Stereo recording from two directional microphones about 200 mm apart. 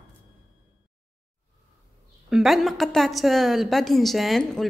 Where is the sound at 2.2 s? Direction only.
Centre (ahead or behind).